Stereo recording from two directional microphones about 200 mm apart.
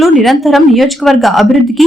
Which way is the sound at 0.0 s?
Centre (ahead or behind).